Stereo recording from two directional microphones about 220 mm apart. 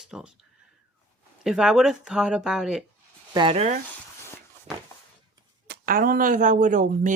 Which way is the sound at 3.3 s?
20° right (ahead or behind).